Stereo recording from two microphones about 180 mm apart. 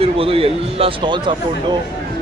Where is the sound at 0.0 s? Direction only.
30° right (ahead or behind).